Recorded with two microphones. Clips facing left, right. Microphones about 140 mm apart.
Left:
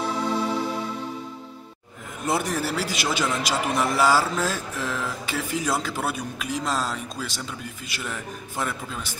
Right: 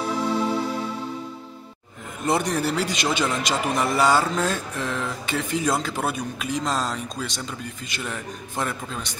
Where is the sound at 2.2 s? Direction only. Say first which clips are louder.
Right 3 dB; centre (ahead or behind).